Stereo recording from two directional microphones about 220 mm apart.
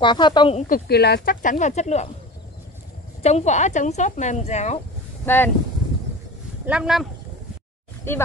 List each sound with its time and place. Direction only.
0.0 s speech: 20° left (ahead or behind)
0.7 s speech: 45° left (ahead or behind)
3.2 s speech: 30° left (ahead or behind)
5.2 s speech: 10° left (ahead or behind)
6.6 s speech: 5° right (ahead or behind)